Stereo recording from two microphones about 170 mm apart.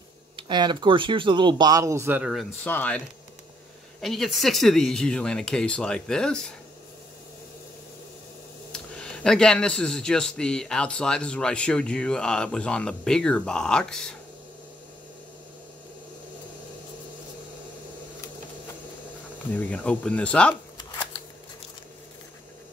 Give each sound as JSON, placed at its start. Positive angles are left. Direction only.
{"t": 0.4, "sound": "speech", "side_deg": -25}
{"t": 2.6, "sound": "speech", "side_deg": 10}
{"t": 4.0, "sound": "speech", "side_deg": 0}
{"t": 8.7, "sound": "speech", "side_deg": 5}
{"t": 19.7, "sound": "speech", "side_deg": 5}